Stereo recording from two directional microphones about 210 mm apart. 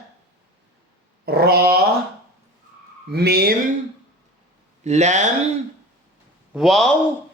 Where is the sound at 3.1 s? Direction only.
50° right (ahead or behind).